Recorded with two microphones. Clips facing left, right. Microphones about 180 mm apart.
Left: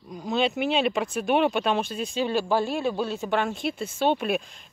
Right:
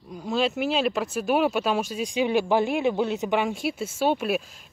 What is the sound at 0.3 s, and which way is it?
Speech, centre (ahead or behind).